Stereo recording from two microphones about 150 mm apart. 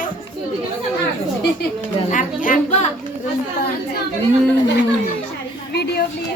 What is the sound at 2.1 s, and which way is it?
Speech, 60° left (ahead or behind).